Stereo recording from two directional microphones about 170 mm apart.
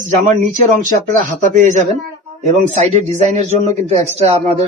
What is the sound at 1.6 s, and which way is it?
Speech, 45° right (ahead or behind).